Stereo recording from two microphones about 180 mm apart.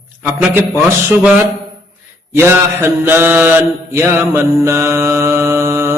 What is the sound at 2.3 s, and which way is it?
Mantra, 15° right (ahead or behind).